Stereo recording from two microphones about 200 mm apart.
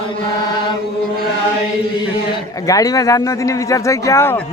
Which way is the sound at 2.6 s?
15° left (ahead or behind).